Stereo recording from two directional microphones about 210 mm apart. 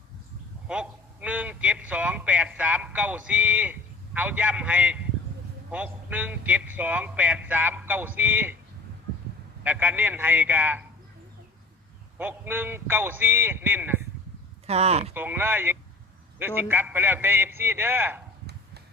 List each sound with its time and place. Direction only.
0.7 s a man's voice: 5° right (ahead or behind)
9.6 s a man's voice: 10° right (ahead or behind)
12.1 s a man's voice: 10° right (ahead or behind)
14.7 s speech: 30° right (ahead or behind)
15.1 s a man's voice: 10° right (ahead or behind)